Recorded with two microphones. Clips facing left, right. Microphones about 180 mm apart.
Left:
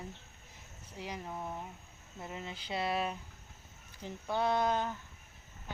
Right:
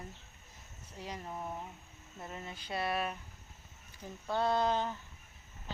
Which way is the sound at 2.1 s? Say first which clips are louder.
Left 2 dB; 15° left (ahead or behind).